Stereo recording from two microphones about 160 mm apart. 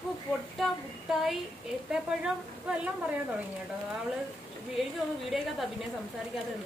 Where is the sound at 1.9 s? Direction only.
5° right (ahead or behind).